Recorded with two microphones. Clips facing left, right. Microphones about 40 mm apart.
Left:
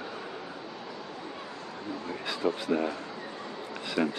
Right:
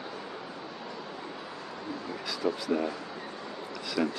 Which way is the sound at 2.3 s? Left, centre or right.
Left.